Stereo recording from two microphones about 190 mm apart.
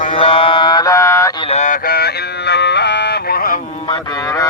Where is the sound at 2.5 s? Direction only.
65° left (ahead or behind).